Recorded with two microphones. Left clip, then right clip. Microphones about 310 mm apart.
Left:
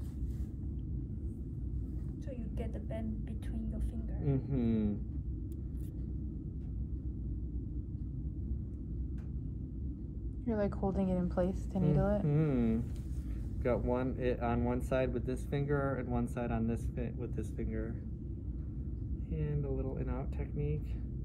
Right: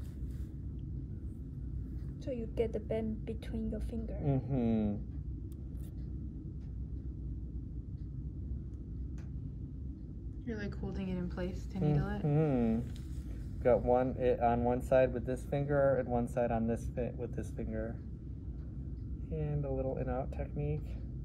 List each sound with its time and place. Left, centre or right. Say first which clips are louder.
2.2 s a woman's voice: right 11 dB; right
4.2 s speech: right 1 dB; centre
10.4 s a woman's voice: left 8 dB; centre
19.3 s speech: right 2 dB; centre